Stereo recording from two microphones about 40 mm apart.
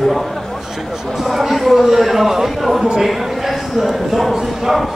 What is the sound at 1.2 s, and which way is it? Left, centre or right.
Speech, centre.